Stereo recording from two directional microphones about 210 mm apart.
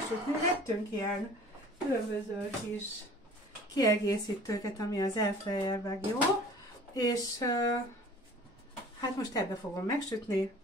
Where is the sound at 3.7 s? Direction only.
15° left (ahead or behind).